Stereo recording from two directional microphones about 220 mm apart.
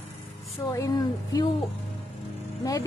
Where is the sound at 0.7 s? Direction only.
15° left (ahead or behind).